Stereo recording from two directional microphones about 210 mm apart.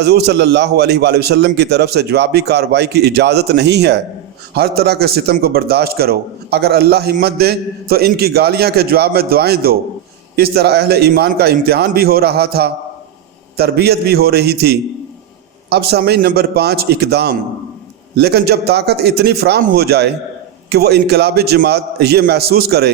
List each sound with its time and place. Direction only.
0.0 s a man's voice: 50° right (ahead or behind)